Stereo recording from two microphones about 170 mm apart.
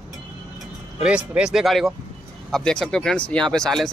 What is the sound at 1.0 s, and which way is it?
Speech, 5° right (ahead or behind).